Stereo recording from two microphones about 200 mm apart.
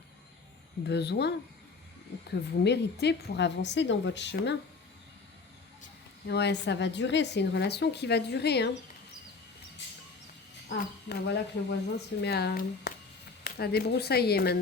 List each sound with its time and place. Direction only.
0.9 s speech: 55° left (ahead or behind)
2.3 s speech: 55° left (ahead or behind)
6.2 s speech: 60° left (ahead or behind)
10.7 s speech: 60° left (ahead or behind)